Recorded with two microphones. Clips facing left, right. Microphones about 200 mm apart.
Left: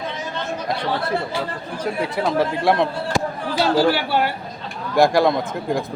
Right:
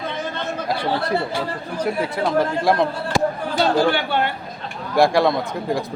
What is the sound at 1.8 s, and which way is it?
Speech, centre (ahead or behind).